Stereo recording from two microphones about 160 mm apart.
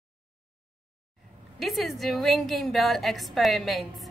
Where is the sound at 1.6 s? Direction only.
Centre (ahead or behind).